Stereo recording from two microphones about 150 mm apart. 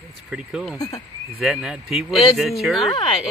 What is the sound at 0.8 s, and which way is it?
Speech, 25° left (ahead or behind).